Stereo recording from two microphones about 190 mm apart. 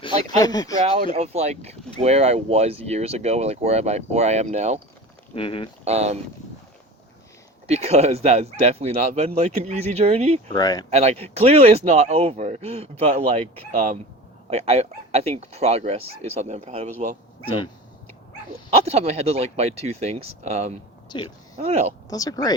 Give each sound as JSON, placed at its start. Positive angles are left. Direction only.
{"t": 0.3, "sound": "speech", "side_deg": 20}
{"t": 1.1, "sound": "speech", "side_deg": -35}
{"t": 5.3, "sound": "speech", "side_deg": 30}
{"t": 5.8, "sound": "speech", "side_deg": -35}
{"t": 7.7, "sound": "speech", "side_deg": -35}
{"t": 10.5, "sound": "speech", "side_deg": 20}
{"t": 10.8, "sound": "speech", "side_deg": -35}
{"t": 14.5, "sound": "speech", "side_deg": -35}
{"t": 18.9, "sound": "speech", "side_deg": -35}
{"t": 21.1, "sound": "speech", "side_deg": 25}
{"t": 21.6, "sound": "speech", "side_deg": -35}
{"t": 22.1, "sound": "speech", "side_deg": 20}